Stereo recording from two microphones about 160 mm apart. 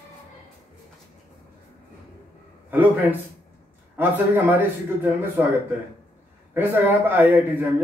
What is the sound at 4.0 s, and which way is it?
A man's voice, 10° right (ahead or behind).